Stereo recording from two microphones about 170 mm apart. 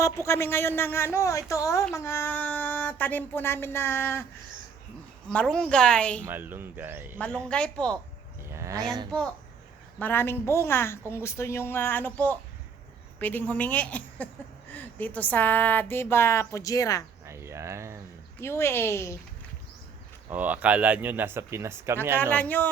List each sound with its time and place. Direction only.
0.0 s a woman's voice: 15° left (ahead or behind)
5.3 s a woman's voice: 5° left (ahead or behind)
6.2 s speech: 10° right (ahead or behind)
7.4 s a woman's voice: 5° left (ahead or behind)
8.4 s a sound: 15° right (ahead or behind)
10.0 s a woman's voice: 10° left (ahead or behind)
17.2 s a sound: 15° right (ahead or behind)
18.3 s a woman's voice: 15° left (ahead or behind)
20.3 s speech: 10° right (ahead or behind)
22.2 s a woman's voice: 10° left (ahead or behind)